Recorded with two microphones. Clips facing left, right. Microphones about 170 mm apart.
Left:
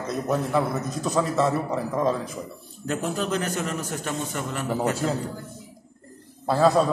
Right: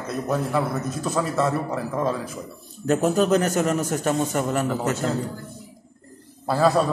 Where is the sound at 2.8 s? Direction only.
45° right (ahead or behind).